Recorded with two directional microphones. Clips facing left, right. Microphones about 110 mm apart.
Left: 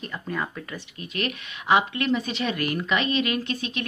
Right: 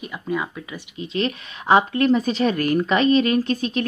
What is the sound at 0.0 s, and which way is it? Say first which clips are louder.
Speech: right 4 dB; 5° right (ahead or behind).